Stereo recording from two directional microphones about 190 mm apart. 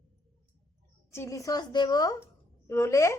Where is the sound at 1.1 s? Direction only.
15° left (ahead or behind).